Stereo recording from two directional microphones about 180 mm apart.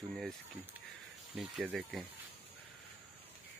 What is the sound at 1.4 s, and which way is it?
Speech, 5° right (ahead or behind).